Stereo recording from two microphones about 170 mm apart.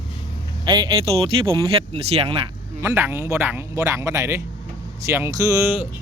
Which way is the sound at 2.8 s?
15° right (ahead or behind).